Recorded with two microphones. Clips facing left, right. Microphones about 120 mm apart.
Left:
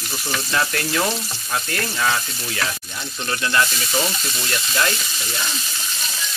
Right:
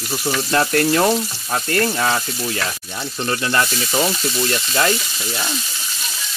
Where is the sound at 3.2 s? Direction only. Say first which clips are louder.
Right 1 dB; 35° right (ahead or behind).